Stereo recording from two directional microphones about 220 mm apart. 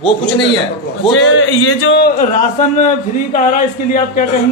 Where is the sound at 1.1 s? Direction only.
60° left (ahead or behind).